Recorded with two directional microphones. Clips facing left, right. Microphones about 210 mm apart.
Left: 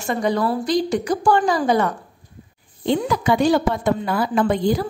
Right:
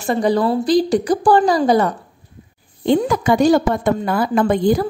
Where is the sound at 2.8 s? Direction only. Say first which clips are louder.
Right 4 dB; 50° right (ahead or behind).